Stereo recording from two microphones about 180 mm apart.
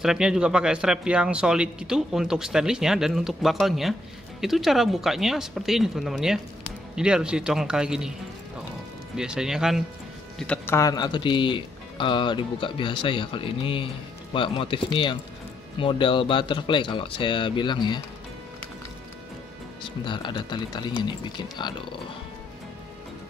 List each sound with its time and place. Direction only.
0.0 s speech: 5° right (ahead or behind)
9.1 s speech: 5° right (ahead or behind)
10.8 s speech: 20° left (ahead or behind)
19.8 s speech: 25° left (ahead or behind)